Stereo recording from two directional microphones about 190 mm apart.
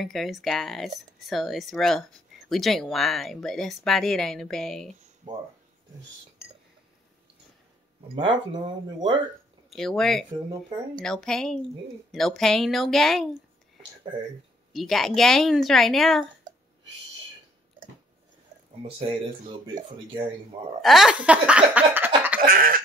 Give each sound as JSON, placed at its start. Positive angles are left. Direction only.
{"t": 0.0, "sound": "speech", "side_deg": 0}
{"t": 8.2, "sound": "speech", "side_deg": -25}
{"t": 9.7, "sound": "speech", "side_deg": 0}
{"t": 14.7, "sound": "speech", "side_deg": 0}
{"t": 18.8, "sound": "speech", "side_deg": -30}
{"t": 20.8, "sound": "a sound", "side_deg": 0}
{"t": 22.4, "sound": "a sound", "side_deg": -50}